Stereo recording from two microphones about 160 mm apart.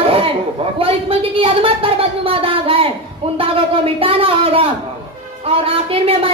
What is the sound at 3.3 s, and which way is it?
Speech, 35° right (ahead or behind).